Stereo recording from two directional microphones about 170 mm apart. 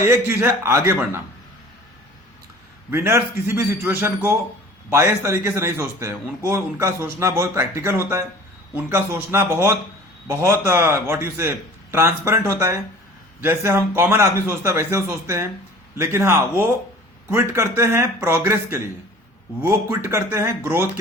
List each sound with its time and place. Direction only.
0.0 s speech: 15° right (ahead or behind)
2.9 s speech: 15° right (ahead or behind)
17.5 s speech: 15° right (ahead or behind)